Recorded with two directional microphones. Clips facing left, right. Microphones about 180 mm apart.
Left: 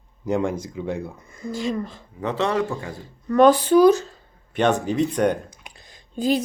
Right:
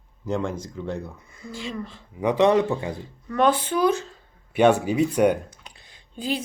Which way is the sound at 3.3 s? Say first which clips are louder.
Left 7 dB; 40° left (ahead or behind).